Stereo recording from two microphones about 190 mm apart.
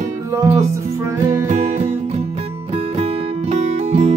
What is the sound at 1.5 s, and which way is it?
Music, 40° right (ahead or behind).